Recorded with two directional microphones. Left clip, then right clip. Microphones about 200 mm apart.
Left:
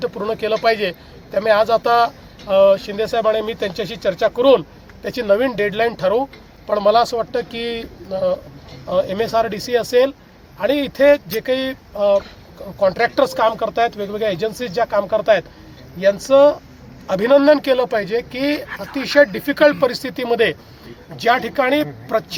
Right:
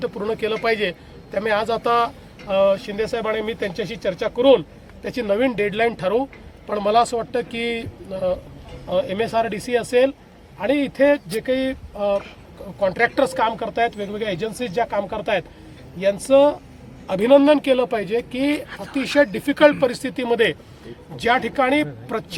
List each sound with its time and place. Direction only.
0.0 s speech: 10° right (ahead or behind)